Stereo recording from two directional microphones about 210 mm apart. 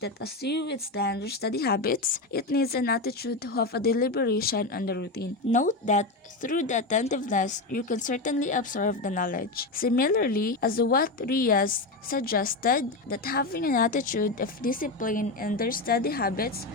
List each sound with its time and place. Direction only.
0.0 s speech: 50° left (ahead or behind)
5.5 s a woman's voice: 35° left (ahead or behind)